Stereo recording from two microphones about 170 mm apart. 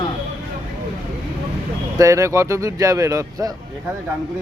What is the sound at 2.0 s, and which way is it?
Speech, 20° right (ahead or behind).